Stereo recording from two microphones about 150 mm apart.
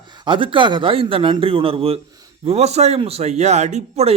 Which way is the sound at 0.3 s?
35° right (ahead or behind).